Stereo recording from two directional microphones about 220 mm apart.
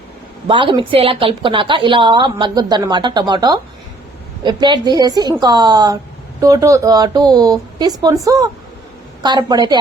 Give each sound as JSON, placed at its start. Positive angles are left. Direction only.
{"t": 0.4, "sound": "a woman's voice", "side_deg": -20}